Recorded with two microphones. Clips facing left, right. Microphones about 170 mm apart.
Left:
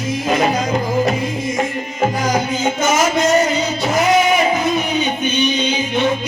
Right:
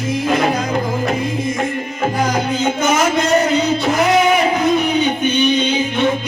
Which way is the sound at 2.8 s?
60° right (ahead or behind).